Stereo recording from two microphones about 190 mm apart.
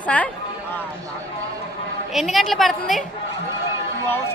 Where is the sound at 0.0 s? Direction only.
10° left (ahead or behind).